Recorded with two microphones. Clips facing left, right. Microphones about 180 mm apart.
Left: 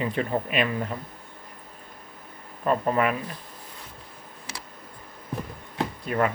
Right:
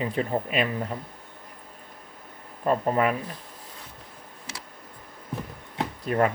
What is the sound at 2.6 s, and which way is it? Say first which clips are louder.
Speech: even; 30° right (ahead or behind).